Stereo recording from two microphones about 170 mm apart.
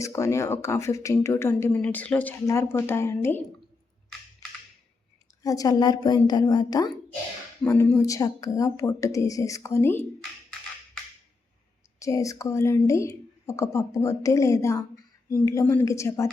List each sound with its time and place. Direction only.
0.0 s speech: 15° left (ahead or behind)
5.4 s speech: 20° left (ahead or behind)
7.6 s speech: 10° left (ahead or behind)
11.9 s speech: 20° left (ahead or behind)